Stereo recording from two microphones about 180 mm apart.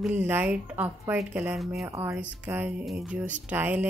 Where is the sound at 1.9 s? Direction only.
15° right (ahead or behind).